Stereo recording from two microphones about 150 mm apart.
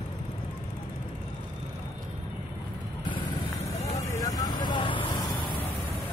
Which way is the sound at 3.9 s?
25° left (ahead or behind).